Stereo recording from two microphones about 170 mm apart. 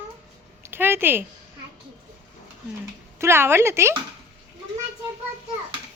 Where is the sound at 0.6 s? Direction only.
15° right (ahead or behind).